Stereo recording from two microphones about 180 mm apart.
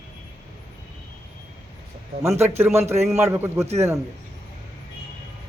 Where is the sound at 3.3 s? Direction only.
15° right (ahead or behind).